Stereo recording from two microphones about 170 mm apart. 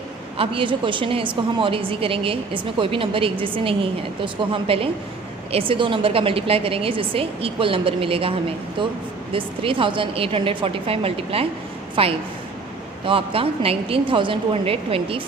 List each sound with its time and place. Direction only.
0.3 s a woman's voice: 30° right (ahead or behind)